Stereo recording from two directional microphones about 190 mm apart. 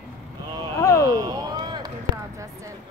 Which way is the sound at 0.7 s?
15° left (ahead or behind).